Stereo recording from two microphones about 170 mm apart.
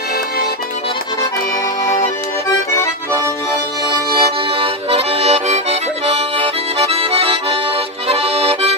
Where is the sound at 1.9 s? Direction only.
20° left (ahead or behind).